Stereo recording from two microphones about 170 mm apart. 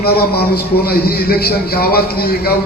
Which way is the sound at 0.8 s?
65° left (ahead or behind).